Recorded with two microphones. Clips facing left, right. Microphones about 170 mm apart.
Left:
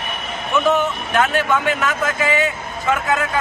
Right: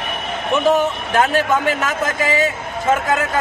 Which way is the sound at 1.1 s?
35° right (ahead or behind).